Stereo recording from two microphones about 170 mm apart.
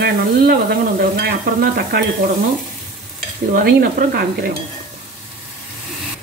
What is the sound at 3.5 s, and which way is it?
A woman's voice, 65° right (ahead or behind).